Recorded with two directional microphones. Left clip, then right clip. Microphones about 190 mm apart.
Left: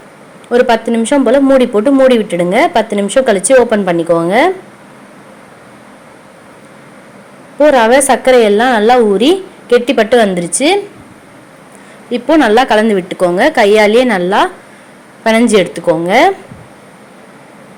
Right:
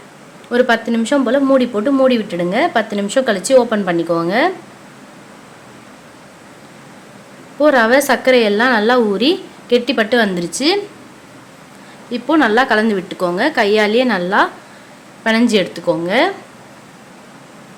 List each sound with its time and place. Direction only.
0.5 s speech: 10° left (ahead or behind)
7.6 s speech: 10° left (ahead or behind)
12.1 s speech: 15° left (ahead or behind)